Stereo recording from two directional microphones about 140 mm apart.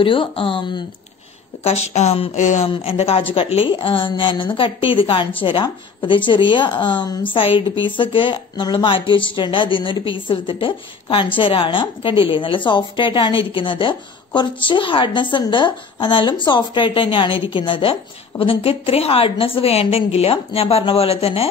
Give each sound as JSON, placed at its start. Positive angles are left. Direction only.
{"t": 0.0, "sound": "a woman's voice", "side_deg": 40}
{"t": 1.6, "sound": "a woman's voice", "side_deg": 50}
{"t": 2.4, "sound": "speech", "side_deg": 60}
{"t": 2.7, "sound": "a woman's voice", "side_deg": 45}